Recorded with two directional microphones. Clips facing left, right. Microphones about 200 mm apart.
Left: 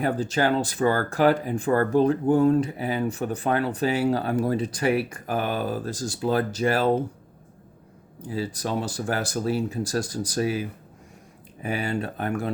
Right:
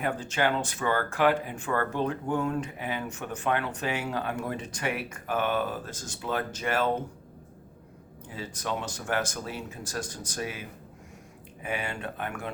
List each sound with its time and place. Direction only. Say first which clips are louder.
0.0 s speech: left 5 dB; 35° left (ahead or behind)
8.2 s speech: left 8 dB; 35° left (ahead or behind)